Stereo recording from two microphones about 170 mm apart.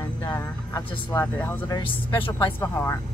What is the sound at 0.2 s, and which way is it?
Speech, 20° left (ahead or behind).